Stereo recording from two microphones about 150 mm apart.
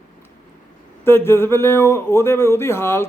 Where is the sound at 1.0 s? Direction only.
15° left (ahead or behind).